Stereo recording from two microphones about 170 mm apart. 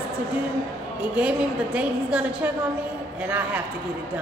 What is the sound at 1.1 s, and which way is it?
A woman's voice, 10° right (ahead or behind).